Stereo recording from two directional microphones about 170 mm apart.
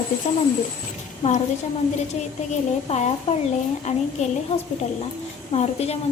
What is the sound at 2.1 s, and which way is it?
A woman's voice, 40° left (ahead or behind).